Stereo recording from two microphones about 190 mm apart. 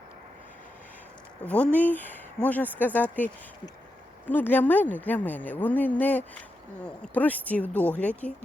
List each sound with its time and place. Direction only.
1.5 s a woman's voice: 5° left (ahead or behind)
4.3 s a woman's voice: 10° left (ahead or behind)